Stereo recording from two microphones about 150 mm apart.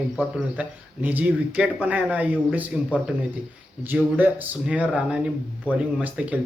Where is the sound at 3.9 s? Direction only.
5° right (ahead or behind).